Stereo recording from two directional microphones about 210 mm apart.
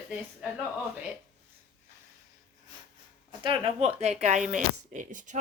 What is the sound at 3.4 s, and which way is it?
Speech, 25° right (ahead or behind).